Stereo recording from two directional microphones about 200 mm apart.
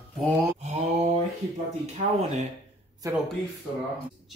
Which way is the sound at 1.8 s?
30° right (ahead or behind).